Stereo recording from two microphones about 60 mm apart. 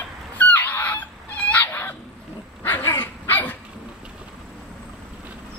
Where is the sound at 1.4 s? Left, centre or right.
Left.